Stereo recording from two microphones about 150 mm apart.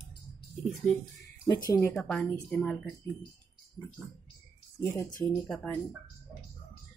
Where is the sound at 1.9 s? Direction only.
5° left (ahead or behind).